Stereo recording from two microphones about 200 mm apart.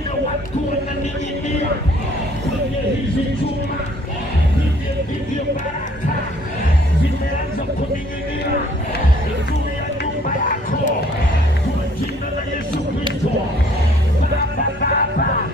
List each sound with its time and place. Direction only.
10.2 s music: 45° left (ahead or behind)
14.8 s music: 45° left (ahead or behind)